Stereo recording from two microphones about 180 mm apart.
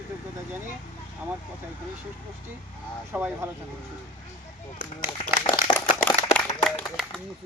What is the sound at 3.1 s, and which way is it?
Speech, 10° right (ahead or behind).